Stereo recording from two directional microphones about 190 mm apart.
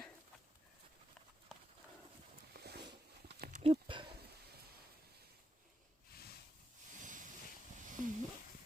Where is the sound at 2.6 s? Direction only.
55° right (ahead or behind).